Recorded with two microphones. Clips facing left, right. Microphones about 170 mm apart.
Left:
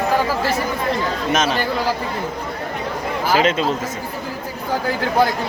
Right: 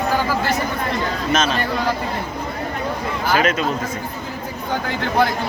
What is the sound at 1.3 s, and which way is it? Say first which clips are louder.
Speech: even; 15° left (ahead or behind).